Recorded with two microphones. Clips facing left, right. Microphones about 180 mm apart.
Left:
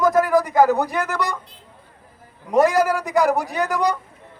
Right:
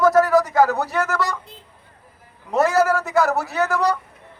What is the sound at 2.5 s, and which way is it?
A man's voice, 15° left (ahead or behind).